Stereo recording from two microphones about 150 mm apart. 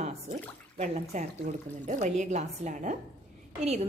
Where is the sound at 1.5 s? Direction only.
65° right (ahead or behind).